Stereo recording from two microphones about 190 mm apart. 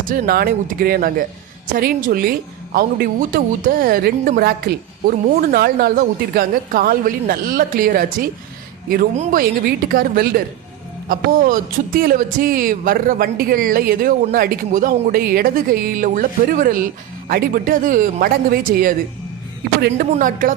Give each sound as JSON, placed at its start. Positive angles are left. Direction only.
{"t": 0.0, "sound": "a woman's voice", "side_deg": -50}